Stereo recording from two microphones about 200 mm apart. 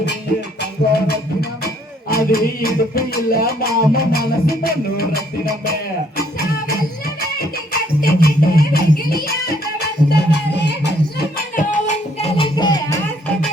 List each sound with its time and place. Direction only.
0.6 s music: 50° left (ahead or behind)
6.7 s music: 50° left (ahead or behind)
11.3 s music: 40° left (ahead or behind)
12.2 s music: 25° left (ahead or behind)